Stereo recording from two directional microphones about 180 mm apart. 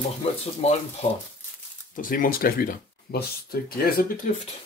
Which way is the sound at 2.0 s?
50° left (ahead or behind).